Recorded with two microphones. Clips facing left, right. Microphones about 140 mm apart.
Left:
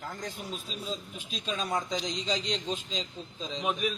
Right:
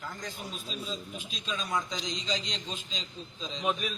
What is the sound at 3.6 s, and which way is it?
Speech, 10° left (ahead or behind).